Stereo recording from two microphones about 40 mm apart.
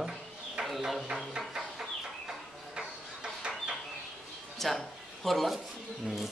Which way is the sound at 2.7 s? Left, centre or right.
Right.